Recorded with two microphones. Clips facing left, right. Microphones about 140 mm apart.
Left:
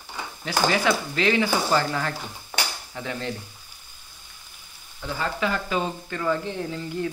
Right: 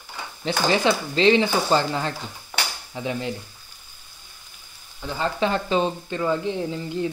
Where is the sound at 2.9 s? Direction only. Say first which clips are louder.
Right 4 dB; 15° right (ahead or behind).